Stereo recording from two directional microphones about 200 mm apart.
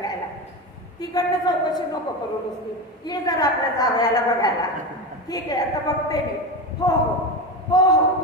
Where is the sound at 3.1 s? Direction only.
20° left (ahead or behind).